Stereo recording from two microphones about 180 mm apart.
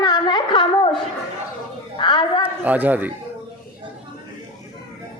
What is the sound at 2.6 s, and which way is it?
Speech, 10° right (ahead or behind).